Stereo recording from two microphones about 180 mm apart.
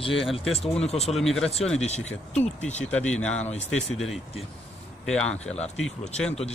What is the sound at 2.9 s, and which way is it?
Speech, 5° left (ahead or behind).